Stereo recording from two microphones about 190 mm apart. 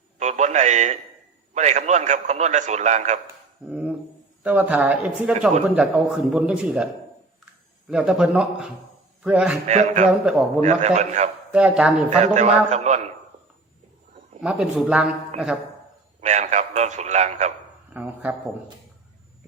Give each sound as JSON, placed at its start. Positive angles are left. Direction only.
{"t": 0.2, "sound": "a man's voice", "side_deg": -40}
{"t": 3.7, "sound": "a sound", "side_deg": -5}
{"t": 4.4, "sound": "a man's voice", "side_deg": -10}
{"t": 7.9, "sound": "a man's voice", "side_deg": -5}
{"t": 9.6, "sound": "a man's voice", "side_deg": -35}
{"t": 10.1, "sound": "a man's voice", "side_deg": -5}
{"t": 10.6, "sound": "a man's voice", "side_deg": -35}
{"t": 11.5, "sound": "a man's voice", "side_deg": -5}
{"t": 12.1, "sound": "a man's voice", "side_deg": -35}
{"t": 14.4, "sound": "a man's voice", "side_deg": -5}
{"t": 16.2, "sound": "a man's voice", "side_deg": -40}
{"t": 17.9, "sound": "speech", "side_deg": -10}